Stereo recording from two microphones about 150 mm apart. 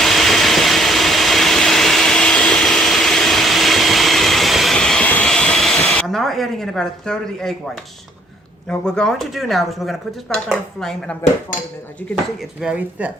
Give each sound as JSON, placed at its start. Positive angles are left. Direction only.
{"t": 0.0, "sound": "vehicle", "side_deg": 0}
{"t": 8.7, "sound": "speech", "side_deg": 5}
{"t": 12.6, "sound": "speech", "side_deg": -10}